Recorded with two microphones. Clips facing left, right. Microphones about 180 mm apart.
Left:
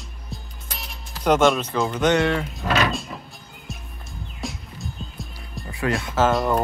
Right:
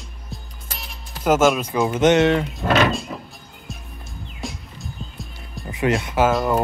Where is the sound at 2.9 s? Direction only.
Centre (ahead or behind).